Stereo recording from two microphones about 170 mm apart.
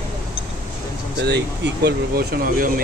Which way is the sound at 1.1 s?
85° right.